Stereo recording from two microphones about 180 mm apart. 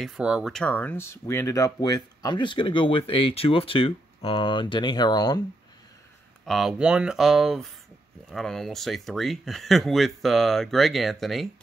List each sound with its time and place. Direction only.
0.0 s speech: centre (ahead or behind); by 5.4 s 25° left (ahead or behind)
6.4 s speech: centre (ahead or behind)